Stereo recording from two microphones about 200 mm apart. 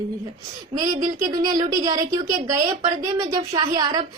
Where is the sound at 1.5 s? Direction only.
20° right (ahead or behind).